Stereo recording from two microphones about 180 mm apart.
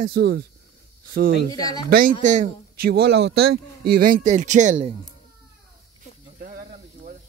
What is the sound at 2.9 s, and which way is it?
Speech, 65° right (ahead or behind).